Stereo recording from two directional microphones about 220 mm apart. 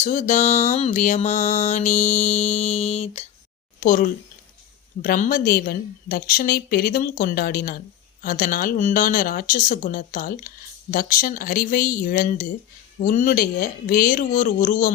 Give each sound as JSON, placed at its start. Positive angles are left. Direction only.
{"t": 0.0, "sound": "mantra", "side_deg": 35}
{"t": 3.8, "sound": "a woman's voice", "side_deg": 40}
{"t": 8.2, "sound": "mantra", "side_deg": 40}